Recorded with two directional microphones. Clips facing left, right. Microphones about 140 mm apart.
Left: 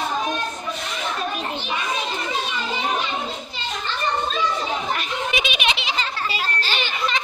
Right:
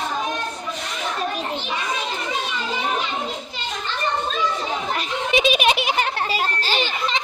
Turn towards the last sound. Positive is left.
turn(degrees=-40)  # may be behind; listen again after turning